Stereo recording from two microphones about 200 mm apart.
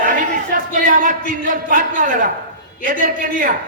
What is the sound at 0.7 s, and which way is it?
A man's voice, 40° right (ahead or behind).